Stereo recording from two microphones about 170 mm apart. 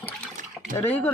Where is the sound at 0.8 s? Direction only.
10° left (ahead or behind).